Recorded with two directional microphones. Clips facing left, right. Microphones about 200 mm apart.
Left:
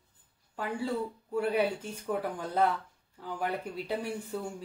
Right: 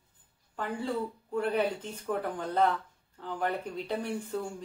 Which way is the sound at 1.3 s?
10° left (ahead or behind).